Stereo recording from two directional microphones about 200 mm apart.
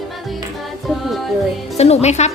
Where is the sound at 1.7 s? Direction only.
35° left (ahead or behind).